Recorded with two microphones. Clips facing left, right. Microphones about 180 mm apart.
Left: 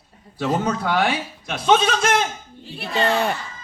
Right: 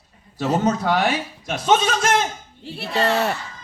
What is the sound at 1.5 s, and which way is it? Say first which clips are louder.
Speech: left 1 dB; 45° right (ahead or behind).